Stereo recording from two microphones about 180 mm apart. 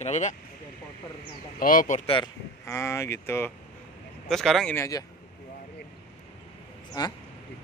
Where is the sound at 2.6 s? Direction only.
15° left (ahead or behind).